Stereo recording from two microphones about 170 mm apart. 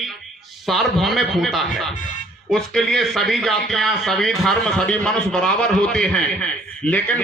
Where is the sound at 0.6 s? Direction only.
Centre (ahead or behind).